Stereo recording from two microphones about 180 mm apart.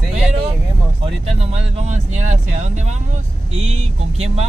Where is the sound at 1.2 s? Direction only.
40° right (ahead or behind).